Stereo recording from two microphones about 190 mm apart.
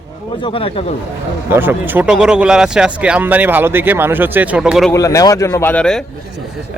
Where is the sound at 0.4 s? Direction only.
30° left (ahead or behind).